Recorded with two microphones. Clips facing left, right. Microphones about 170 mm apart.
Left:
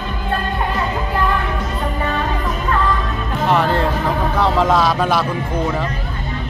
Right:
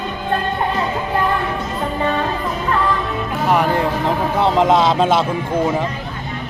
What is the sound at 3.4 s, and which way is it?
A man's voice, 10° right (ahead or behind).